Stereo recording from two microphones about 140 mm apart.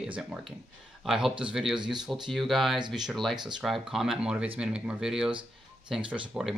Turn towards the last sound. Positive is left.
turn(degrees=-5)  # may be behind; listen again after turning